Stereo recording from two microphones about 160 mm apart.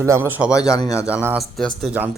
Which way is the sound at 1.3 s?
Centre (ahead or behind).